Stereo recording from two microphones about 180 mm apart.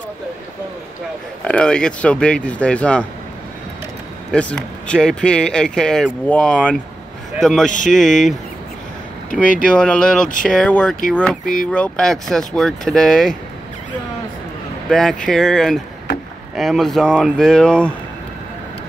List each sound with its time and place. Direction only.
1.4 s speech: 5° left (ahead or behind)
4.3 s speech: 5° left (ahead or behind)
9.7 s speech: 5° left (ahead or behind)
11.4 s speech: 50° left (ahead or behind)
11.7 s speech: 5° left (ahead or behind)
14.9 s speech: 5° left (ahead or behind)